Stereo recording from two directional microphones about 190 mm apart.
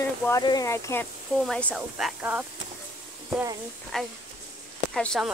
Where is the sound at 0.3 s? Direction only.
20° left (ahead or behind).